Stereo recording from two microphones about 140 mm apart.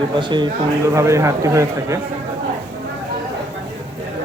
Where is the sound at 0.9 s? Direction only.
20° right (ahead or behind).